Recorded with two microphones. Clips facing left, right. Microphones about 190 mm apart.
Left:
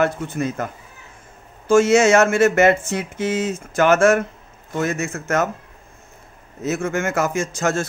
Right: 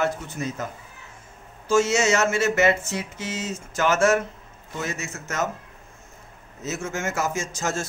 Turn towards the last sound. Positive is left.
turn(degrees=60)  # may be behind; listen again after turning